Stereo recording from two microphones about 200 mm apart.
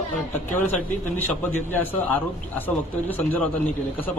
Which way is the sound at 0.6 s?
10° left (ahead or behind).